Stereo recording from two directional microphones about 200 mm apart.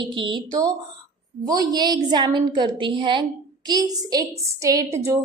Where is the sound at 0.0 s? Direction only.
25° right (ahead or behind).